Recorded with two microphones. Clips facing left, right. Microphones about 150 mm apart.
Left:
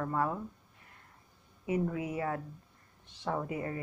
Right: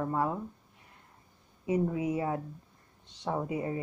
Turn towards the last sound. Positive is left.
turn(degrees=-15)  # may be behind; listen again after turning